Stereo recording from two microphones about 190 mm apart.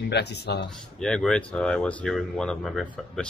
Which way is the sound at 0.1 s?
60° left (ahead or behind).